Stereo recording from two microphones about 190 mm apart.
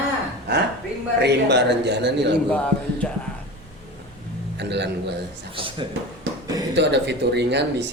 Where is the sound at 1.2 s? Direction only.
60° right (ahead or behind).